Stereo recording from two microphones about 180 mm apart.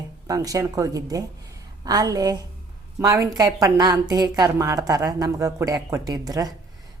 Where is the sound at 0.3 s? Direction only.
20° right (ahead or behind).